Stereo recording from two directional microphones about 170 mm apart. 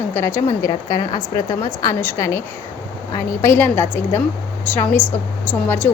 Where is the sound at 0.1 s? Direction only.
15° left (ahead or behind).